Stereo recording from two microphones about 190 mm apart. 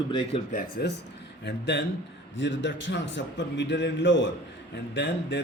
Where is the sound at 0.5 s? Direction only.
60° left (ahead or behind).